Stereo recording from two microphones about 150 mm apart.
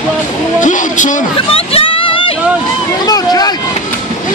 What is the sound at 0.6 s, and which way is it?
Speech, 55° left (ahead or behind).